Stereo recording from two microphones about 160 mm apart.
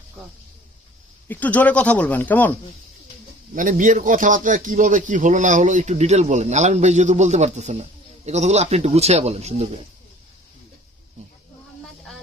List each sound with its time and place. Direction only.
1.3 s speech: 10° left (ahead or behind)
3.5 s speech: 55° right (ahead or behind)